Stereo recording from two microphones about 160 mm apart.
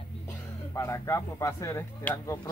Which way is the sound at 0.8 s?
15° left (ahead or behind).